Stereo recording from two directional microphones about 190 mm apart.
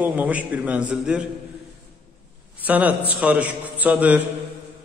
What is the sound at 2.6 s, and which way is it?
A man's voice, 10° right (ahead or behind).